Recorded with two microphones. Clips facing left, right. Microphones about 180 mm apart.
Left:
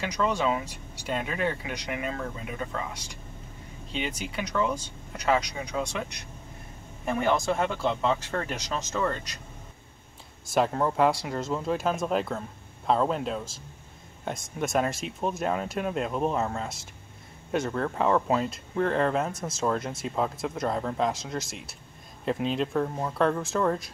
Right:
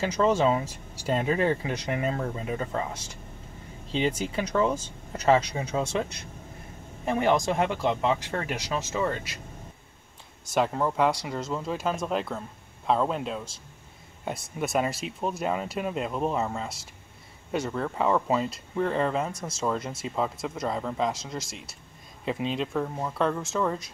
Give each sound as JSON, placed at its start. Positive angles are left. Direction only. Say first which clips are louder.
{"t": 0.0, "sound": "speech", "louder": "right 4 dB", "side_deg": -30}
{"t": 10.5, "sound": "speech", "louder": "left 1 dB", "side_deg": 0}